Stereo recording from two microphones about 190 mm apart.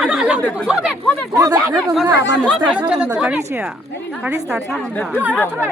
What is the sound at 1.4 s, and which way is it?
Speech, 15° right (ahead or behind).